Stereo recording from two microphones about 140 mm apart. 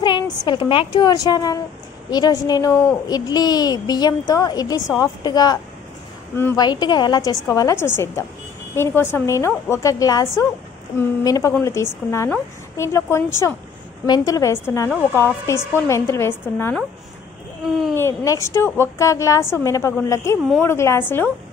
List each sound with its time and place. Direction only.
0.5 s a woman's voice: 40° left (ahead or behind); by 16.7 s 15° left (ahead or behind)
17.9 s a woman's voice: 20° left (ahead or behind)